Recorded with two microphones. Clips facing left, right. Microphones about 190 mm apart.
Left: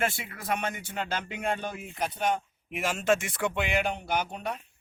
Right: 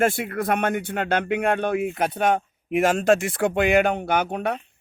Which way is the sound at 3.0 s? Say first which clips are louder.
Right 7 dB; 35° right (ahead or behind).